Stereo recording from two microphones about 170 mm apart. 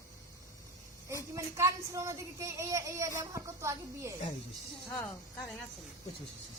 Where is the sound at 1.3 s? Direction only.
15° right (ahead or behind).